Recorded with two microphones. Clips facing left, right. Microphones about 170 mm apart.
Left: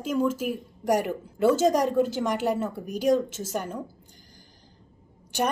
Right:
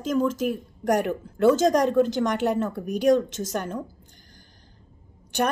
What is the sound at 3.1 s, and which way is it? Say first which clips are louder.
Speech: right 2 dB; 5° left (ahead or behind).